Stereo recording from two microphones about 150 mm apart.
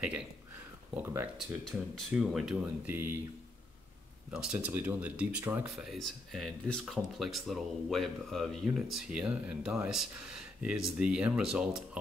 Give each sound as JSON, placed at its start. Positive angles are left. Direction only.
{"t": 1.0, "sound": "speech", "side_deg": -15}
{"t": 1.7, "sound": "speech", "side_deg": 0}
{"t": 4.3, "sound": "speech", "side_deg": -5}
{"t": 5.8, "sound": "speech", "side_deg": 0}